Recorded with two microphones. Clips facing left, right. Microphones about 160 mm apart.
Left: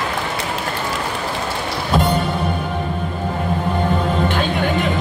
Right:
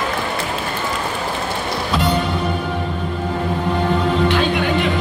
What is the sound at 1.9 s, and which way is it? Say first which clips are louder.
Music: left 3 dB; 50° left (ahead or behind).